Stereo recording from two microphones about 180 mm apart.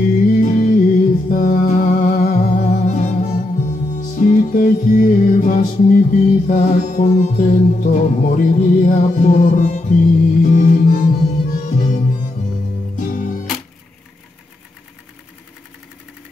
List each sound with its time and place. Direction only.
0.2 s music: 45° left (ahead or behind)